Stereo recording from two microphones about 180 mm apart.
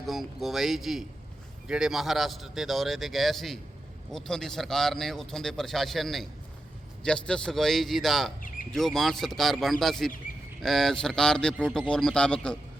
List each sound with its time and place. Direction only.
0.0 s speech: centre (ahead or behind)
8.4 s bird: 50° left (ahead or behind)
8.7 s speech: centre (ahead or behind)